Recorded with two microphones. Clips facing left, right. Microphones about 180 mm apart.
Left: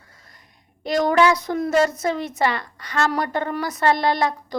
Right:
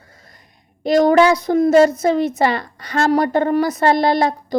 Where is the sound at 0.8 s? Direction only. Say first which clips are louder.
Right 5 dB; 30° right (ahead or behind).